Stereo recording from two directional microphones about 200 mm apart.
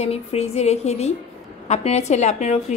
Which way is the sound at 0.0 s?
30° left (ahead or behind).